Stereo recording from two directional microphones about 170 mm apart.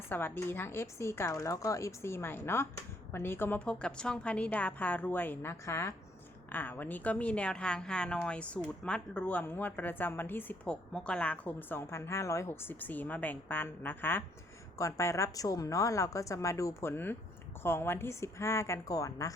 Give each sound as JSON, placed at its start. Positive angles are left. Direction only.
{"t": 0.1, "sound": "a woman's voice", "side_deg": 10}